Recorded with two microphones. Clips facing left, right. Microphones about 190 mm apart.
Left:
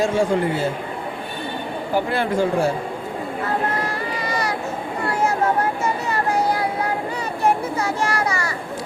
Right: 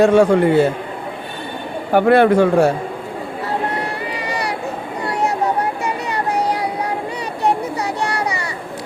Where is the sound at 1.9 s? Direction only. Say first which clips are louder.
Right 10 dB; 65° right (ahead or behind).